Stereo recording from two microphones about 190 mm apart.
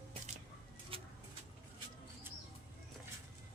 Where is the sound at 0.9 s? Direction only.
30° right (ahead or behind).